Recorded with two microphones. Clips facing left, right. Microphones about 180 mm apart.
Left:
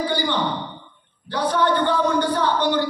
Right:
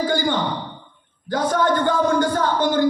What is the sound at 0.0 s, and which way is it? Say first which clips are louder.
Speech: right 2 dB; 45° right (ahead or behind).